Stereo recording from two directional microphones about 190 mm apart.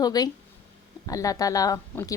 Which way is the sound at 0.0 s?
20° left (ahead or behind).